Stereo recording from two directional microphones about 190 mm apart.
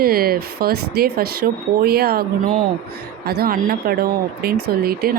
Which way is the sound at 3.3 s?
50° right (ahead or behind).